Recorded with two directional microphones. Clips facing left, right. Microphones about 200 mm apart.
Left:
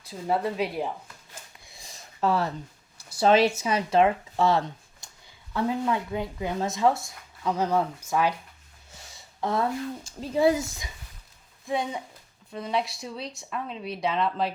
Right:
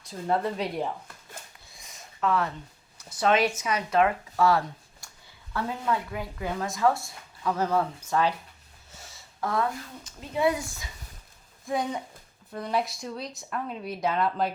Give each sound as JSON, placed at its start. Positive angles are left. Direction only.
{"t": 0.1, "sound": "speech", "side_deg": 5}
{"t": 1.8, "sound": "a sound", "side_deg": 30}
{"t": 3.2, "sound": "speech", "side_deg": 30}
{"t": 9.4, "sound": "speech", "side_deg": 25}
{"t": 11.6, "sound": "speech", "side_deg": 0}